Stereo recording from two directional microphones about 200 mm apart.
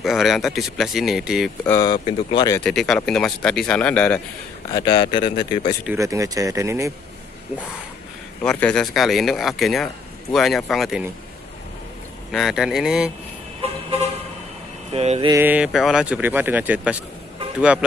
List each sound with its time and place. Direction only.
0.0 s speech: centre (ahead or behind)
1.7 s speech: 20° left (ahead or behind)
2.6 s speech: centre (ahead or behind)
4.6 s speech: 20° left (ahead or behind)
5.9 s speech: 15° right (ahead or behind)
8.4 s speech: 5° left (ahead or behind)
12.3 s speech: centre (ahead or behind)
14.9 s mantra: 30° right (ahead or behind)
15.3 s speech: 10° right (ahead or behind)